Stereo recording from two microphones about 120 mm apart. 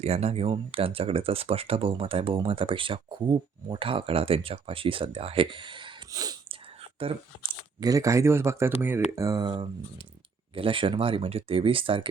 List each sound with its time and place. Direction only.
0.0 s speech: 60° right (ahead or behind); by 5.9 s 45° right (ahead or behind)
6.1 s speech: 30° right (ahead or behind)
7.0 s speech: 50° right (ahead or behind)
7.8 s speech: 30° right (ahead or behind)
9.1 s speech: 30° right (ahead or behind)
10.5 s speech: 45° right (ahead or behind)